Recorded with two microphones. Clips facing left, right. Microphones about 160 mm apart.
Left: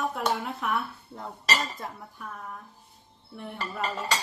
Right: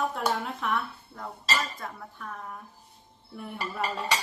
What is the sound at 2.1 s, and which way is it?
Speech, centre (ahead or behind).